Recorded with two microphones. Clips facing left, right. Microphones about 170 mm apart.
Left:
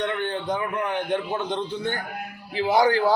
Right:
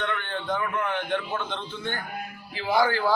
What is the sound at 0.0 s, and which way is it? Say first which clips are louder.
A man's voice: left 4 dB; 15° left (ahead or behind).